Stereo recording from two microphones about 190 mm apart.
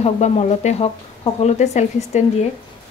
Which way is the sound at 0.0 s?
35° left (ahead or behind).